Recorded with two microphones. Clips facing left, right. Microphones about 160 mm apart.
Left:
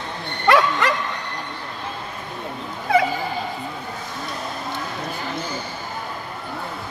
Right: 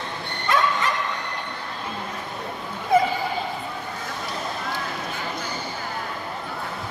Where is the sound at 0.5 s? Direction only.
70° left (ahead or behind).